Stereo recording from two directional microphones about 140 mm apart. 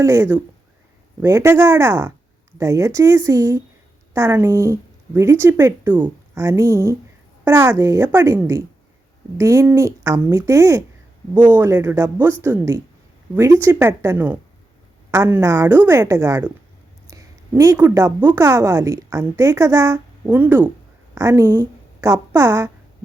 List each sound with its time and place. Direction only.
0.0 s a woman's voice: 20° right (ahead or behind)